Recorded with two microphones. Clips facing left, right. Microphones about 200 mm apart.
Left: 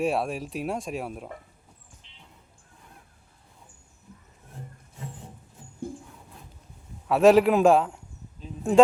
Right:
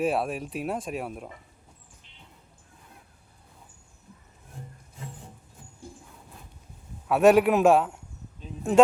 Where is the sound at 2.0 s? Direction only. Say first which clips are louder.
Right 1 dB; 50° right (ahead or behind).